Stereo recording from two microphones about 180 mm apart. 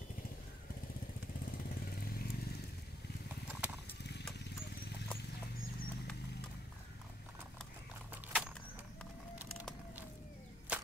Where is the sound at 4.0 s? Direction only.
70° left (ahead or behind).